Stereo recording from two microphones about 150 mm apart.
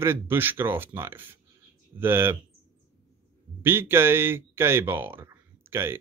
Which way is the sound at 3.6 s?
15° right (ahead or behind).